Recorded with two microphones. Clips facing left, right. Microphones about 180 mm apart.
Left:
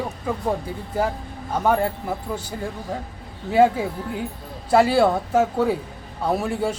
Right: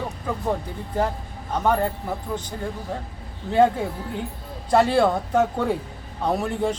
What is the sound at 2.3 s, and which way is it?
Speech, 10° left (ahead or behind).